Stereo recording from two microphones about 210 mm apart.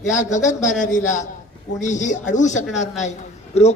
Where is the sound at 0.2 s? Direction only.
35° left (ahead or behind).